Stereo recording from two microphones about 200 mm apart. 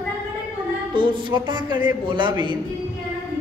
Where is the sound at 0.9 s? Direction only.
25° right (ahead or behind).